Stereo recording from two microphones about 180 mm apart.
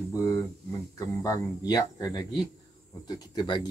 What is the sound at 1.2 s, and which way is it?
Speech, 20° left (ahead or behind).